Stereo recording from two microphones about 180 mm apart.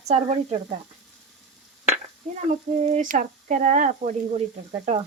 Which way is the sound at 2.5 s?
40° right (ahead or behind).